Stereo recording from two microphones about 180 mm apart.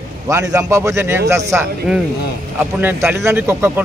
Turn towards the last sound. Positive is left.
turn(degrees=-15)  # may be behind; listen again after turning